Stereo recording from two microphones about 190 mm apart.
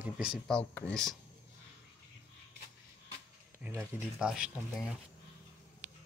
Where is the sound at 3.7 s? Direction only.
15° right (ahead or behind).